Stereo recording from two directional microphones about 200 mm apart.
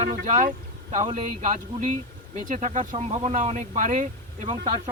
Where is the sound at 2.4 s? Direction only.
40° right (ahead or behind).